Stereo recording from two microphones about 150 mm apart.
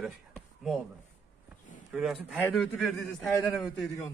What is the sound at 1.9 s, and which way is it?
A man's voice, 5° right (ahead or behind).